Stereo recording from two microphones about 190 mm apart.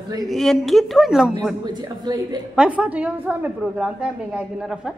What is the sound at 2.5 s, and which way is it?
A woman's voice, 5° right (ahead or behind).